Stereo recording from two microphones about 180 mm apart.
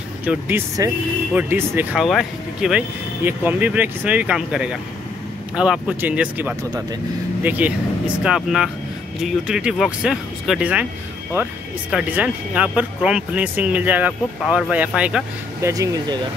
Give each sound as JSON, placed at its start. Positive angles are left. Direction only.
{"t": 0.2, "sound": "speech", "side_deg": -10}
{"t": 15.6, "sound": "speech", "side_deg": -20}